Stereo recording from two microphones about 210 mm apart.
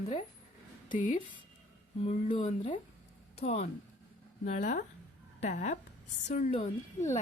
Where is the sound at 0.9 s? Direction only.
40° left (ahead or behind).